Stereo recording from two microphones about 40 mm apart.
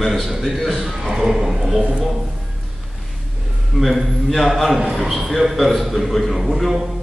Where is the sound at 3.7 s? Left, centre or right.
Centre.